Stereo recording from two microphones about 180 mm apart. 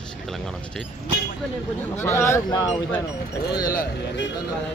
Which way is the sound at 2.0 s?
15° left (ahead or behind).